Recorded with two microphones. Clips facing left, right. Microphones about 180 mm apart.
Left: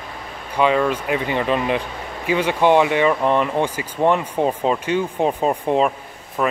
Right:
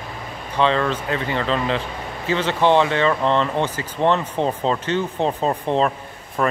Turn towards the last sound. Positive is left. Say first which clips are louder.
# even
turn(degrees=10)  # may be behind; listen again after turning